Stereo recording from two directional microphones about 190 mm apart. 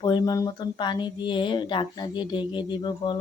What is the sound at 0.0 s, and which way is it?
Speech, 20° left (ahead or behind).